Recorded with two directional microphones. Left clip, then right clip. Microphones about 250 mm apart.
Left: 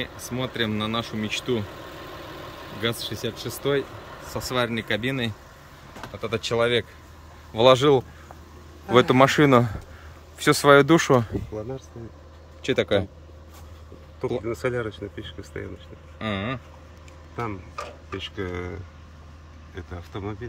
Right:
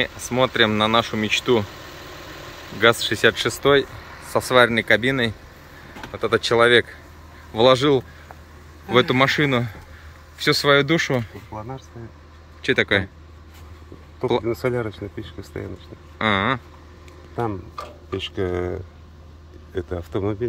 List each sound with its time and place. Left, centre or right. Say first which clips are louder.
0.0 s speech: right 10 dB; centre
2.8 s speech: right 12 dB; centre
12.6 s speech: right 3 dB; centre
14.6 s speech: right 3 dB; right
16.2 s a sound: right 10 dB; centre
18.1 s speech: right 7 dB; right